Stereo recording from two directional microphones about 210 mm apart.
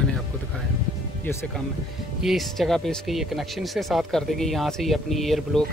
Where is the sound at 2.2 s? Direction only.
Centre (ahead or behind).